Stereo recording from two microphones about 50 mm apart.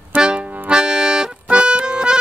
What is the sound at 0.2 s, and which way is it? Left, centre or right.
Accordion, centre.